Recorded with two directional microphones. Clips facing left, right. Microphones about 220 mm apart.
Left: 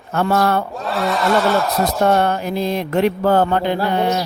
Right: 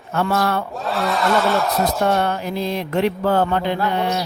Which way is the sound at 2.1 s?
45° left (ahead or behind).